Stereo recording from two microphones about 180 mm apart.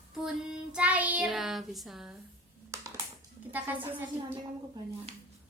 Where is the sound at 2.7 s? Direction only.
15° right (ahead or behind).